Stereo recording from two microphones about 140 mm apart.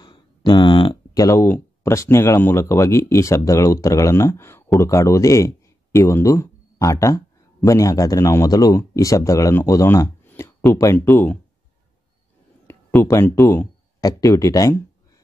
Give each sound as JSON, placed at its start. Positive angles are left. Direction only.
{"t": 0.0, "sound": "a man's voice", "side_deg": 30}
{"t": 12.6, "sound": "speech", "side_deg": 20}